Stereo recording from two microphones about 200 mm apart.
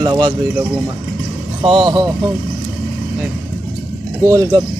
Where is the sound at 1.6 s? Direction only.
20° right (ahead or behind).